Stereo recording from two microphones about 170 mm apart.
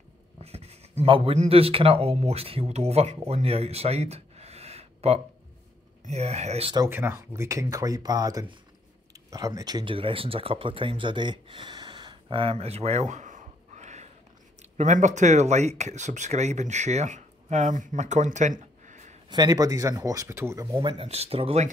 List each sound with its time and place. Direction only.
0.4 s a man's voice: 35° right (ahead or behind)
6.8 s speech: 15° right (ahead or behind); by 19.1 s 45° right (ahead or behind)
19.2 s speech: 25° right (ahead or behind)
20.7 s speech: 30° right (ahead or behind)